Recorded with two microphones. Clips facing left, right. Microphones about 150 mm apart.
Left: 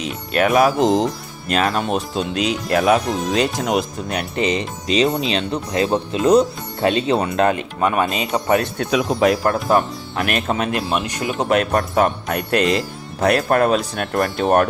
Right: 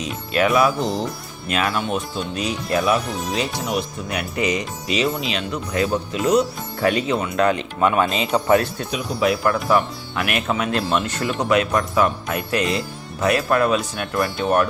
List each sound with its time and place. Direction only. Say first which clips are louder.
0.0 s a man's voice: left 1 dB; 55° left (ahead or behind)
0.8 s speech: left 7 dB; 90° left
1.5 s speech: left 3 dB; 35° left (ahead or behind)
2.1 s speech: left 4 dB; 70° left (ahead or behind)
3.1 s speech: left 5 dB; centre (ahead or behind)
4.1 s speech: left 2 dB; 30° left (ahead or behind)
7.4 s speech: even; 45° left (ahead or behind)
8.8 s speech: left 7 dB; 75° left (ahead or behind)
9.2 s speech: right 1 dB; 40° left (ahead or behind)
10.7 s speech: even; 15° left (ahead or behind)
11.4 s a man's voice: left 1 dB; 50° left (ahead or behind)